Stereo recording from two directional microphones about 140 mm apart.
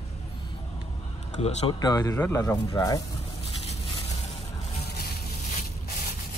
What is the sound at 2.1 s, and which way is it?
Speech, 15° left (ahead or behind).